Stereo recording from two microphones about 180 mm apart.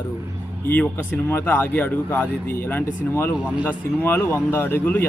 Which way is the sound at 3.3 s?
5° right (ahead or behind).